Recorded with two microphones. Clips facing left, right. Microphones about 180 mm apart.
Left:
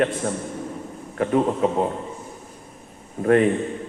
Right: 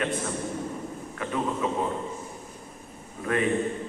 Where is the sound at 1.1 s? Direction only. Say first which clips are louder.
Left 9 dB; 45° left (ahead or behind).